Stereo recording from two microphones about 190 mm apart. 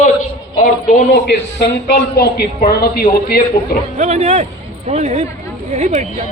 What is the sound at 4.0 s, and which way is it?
Speech, 35° right (ahead or behind).